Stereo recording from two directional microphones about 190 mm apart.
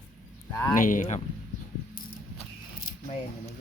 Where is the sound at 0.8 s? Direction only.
45° left (ahead or behind).